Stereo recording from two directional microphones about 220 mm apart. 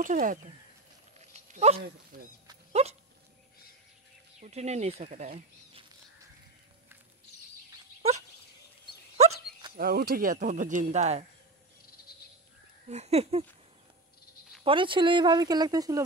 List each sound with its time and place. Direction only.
0.0 s speech: 35° right (ahead or behind)
1.3 s dog: 30° right (ahead or behind)
4.4 s speech: 30° right (ahead or behind)
9.1 s dog: 30° right (ahead or behind)
9.8 s speech: 45° right (ahead or behind)
12.8 s speech: 30° right (ahead or behind)
14.6 s speech: 25° right (ahead or behind)